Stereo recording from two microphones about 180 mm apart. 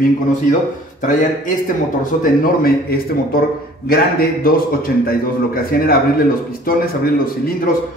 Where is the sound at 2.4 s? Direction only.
55° left (ahead or behind).